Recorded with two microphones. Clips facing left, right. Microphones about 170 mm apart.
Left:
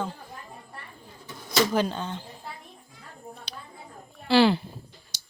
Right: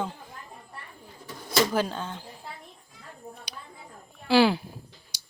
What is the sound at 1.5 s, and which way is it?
Speech, 5° right (ahead or behind).